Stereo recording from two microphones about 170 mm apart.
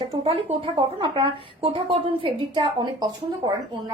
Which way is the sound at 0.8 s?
30° right (ahead or behind).